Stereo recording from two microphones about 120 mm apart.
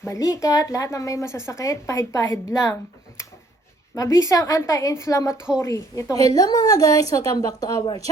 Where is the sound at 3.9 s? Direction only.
25° left (ahead or behind).